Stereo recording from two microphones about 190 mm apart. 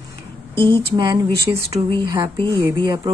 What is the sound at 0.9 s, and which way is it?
A woman's voice, 20° right (ahead or behind).